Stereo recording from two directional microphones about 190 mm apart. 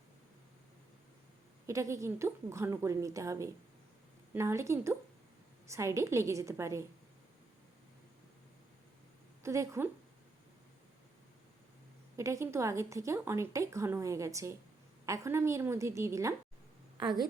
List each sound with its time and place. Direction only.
1.6 s speech: 15° right (ahead or behind)
9.4 s speech: 15° right (ahead or behind)
12.1 s speech: 15° right (ahead or behind)